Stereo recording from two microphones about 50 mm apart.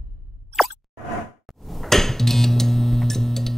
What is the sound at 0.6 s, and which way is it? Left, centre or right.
Plop, centre.